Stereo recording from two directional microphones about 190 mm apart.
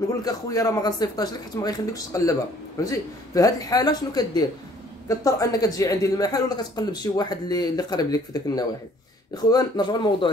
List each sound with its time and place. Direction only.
0.1 s speech: 20° left (ahead or behind)